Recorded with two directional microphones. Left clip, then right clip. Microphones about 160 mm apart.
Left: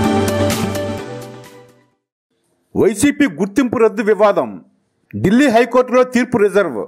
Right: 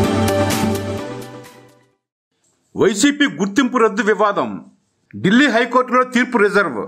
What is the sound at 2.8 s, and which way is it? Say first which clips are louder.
A man's voice: left 1 dB; 25° left (ahead or behind).